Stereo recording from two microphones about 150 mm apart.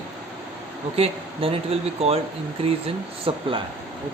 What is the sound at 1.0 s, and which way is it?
Speech, 40° right (ahead or behind).